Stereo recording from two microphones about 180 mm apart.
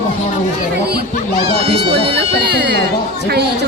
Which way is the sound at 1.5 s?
30° right (ahead or behind).